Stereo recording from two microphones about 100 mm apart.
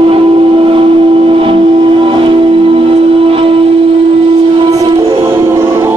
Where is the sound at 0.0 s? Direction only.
65° right (ahead or behind).